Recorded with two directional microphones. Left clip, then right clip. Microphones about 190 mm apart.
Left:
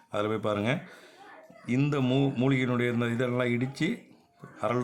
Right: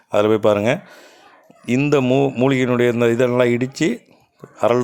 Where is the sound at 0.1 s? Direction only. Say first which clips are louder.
Right 14 dB; 40° right (ahead or behind).